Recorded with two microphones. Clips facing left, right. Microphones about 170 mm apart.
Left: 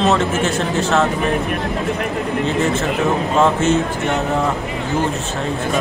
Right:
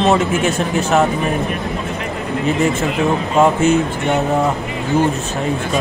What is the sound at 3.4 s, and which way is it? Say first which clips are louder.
Speech: right 3 dB; 15° right (ahead or behind).